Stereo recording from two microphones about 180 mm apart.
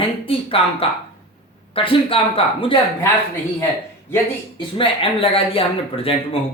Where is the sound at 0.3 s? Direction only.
30° left (ahead or behind).